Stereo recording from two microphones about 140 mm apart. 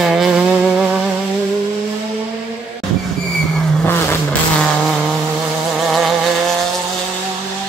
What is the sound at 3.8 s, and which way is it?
Vehicle, 15° left (ahead or behind).